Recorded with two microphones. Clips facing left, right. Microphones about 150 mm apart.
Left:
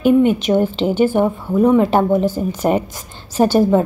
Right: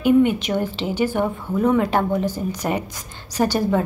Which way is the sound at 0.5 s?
25° left (ahead or behind).